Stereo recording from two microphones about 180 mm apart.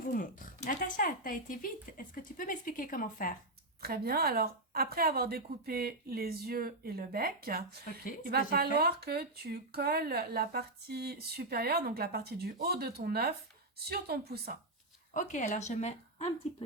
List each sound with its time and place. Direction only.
0.1 s speech: 50° left (ahead or behind)
3.8 s speech: 55° right (ahead or behind)
15.1 s speech: 45° left (ahead or behind)